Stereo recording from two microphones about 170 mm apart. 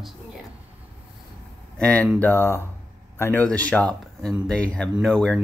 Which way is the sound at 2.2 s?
10° left (ahead or behind).